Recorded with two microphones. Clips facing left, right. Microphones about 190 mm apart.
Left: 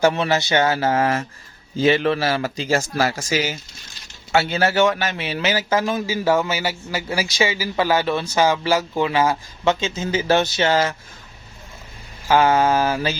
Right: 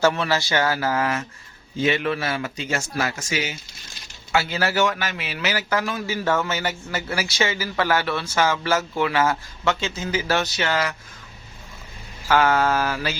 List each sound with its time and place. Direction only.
0.0 s a man's voice: 20° left (ahead or behind)
12.3 s a man's voice: 20° left (ahead or behind)